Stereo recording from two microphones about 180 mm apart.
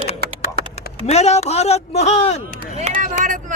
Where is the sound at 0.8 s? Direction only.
35° left (ahead or behind).